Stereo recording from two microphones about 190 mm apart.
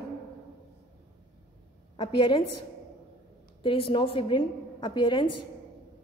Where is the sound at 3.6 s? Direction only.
30° left (ahead or behind).